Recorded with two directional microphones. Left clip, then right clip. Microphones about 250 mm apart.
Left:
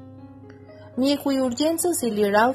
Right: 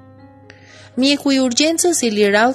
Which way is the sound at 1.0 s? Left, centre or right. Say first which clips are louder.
Right 6 dB; right.